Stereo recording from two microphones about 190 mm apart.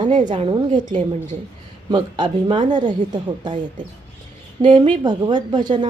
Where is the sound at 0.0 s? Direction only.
25° right (ahead or behind).